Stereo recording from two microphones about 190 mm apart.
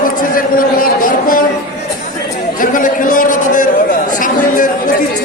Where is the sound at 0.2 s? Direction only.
45° left (ahead or behind).